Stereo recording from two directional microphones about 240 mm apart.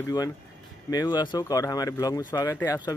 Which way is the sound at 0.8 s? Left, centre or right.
Centre.